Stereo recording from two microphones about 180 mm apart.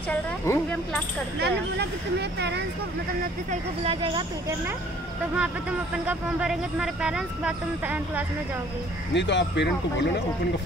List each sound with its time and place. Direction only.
0.1 s speech: 5° left (ahead or behind)
1.4 s speech: 70° right (ahead or behind)
3.4 s speech: 30° right (ahead or behind)
5.4 s speech: 5° right (ahead or behind)
9.1 s speech: 75° left (ahead or behind)